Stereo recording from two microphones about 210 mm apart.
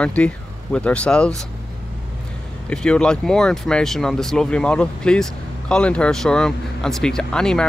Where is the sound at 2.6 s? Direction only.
5° left (ahead or behind).